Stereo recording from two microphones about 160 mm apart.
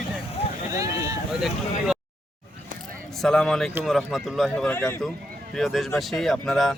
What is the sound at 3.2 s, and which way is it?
Speech, 5° left (ahead or behind).